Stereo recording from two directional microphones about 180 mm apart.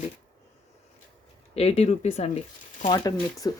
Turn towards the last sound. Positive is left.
turn(degrees=20)  # may be behind; listen again after turning